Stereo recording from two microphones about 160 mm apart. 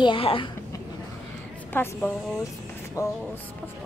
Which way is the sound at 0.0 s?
35° left (ahead or behind).